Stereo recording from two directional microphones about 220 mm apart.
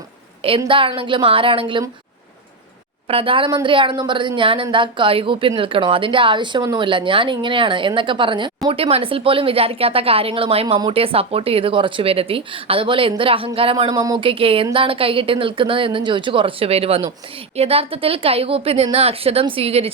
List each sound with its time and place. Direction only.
0.6 s a woman's voice: 25° right (ahead or behind)
3.1 s a woman's voice: 25° right (ahead or behind)